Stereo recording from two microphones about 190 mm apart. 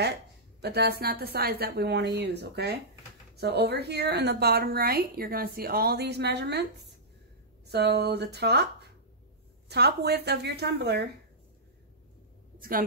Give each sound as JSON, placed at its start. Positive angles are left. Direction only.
{"t": 0.6, "sound": "a woman's voice", "side_deg": -60}
{"t": 9.7, "sound": "a woman's voice", "side_deg": -60}
{"t": 12.5, "sound": "a sound", "side_deg": -50}